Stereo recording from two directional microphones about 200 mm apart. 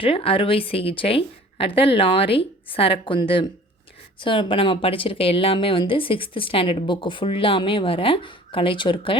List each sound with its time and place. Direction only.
0.0 s speech: 25° left (ahead or behind)